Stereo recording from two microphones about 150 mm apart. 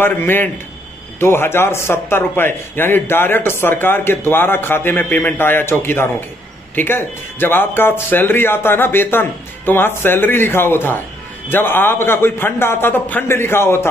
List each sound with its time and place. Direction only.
0.0 s a man's voice: 15° left (ahead or behind)